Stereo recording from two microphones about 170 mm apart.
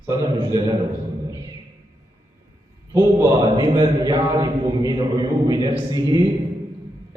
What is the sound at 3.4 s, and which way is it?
A man's voice, 25° right (ahead or behind).